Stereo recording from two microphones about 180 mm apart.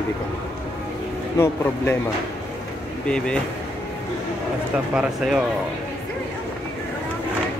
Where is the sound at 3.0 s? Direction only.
5° left (ahead or behind).